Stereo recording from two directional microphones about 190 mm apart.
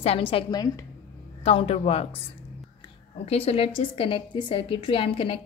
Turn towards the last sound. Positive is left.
turn(degrees=30)  # may be behind; listen again after turning